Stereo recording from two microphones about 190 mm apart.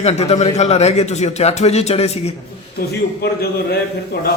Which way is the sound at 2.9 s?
55° left (ahead or behind).